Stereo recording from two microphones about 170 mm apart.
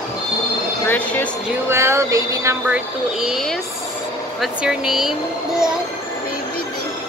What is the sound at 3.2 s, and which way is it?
Speech, centre (ahead or behind).